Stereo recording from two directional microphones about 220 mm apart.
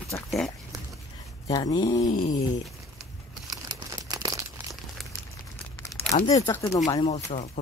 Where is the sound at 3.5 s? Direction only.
15° right (ahead or behind).